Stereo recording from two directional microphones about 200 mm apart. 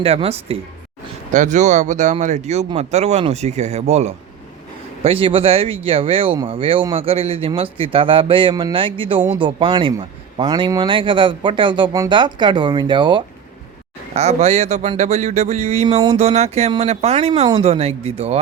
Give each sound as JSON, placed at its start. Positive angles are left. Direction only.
{"t": 0.0, "sound": "speech", "side_deg": -30}